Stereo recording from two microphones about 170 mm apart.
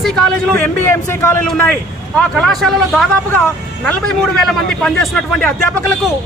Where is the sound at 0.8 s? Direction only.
15° left (ahead or behind).